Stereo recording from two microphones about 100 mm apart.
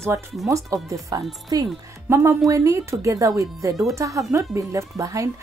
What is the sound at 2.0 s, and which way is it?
Speech, 30° right (ahead or behind).